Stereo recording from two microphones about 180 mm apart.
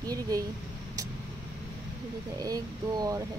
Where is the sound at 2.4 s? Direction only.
20° right (ahead or behind).